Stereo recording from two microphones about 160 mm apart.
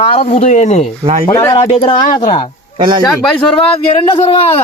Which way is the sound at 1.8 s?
30° left (ahead or behind).